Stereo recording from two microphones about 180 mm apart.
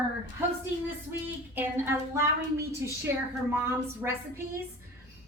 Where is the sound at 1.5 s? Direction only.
10° right (ahead or behind).